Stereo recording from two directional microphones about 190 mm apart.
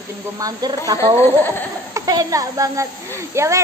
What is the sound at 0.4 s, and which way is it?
Speech, 20° right (ahead or behind).